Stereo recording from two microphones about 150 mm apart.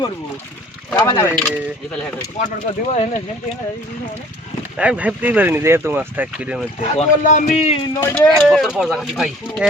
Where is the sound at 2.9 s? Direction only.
50° left (ahead or behind).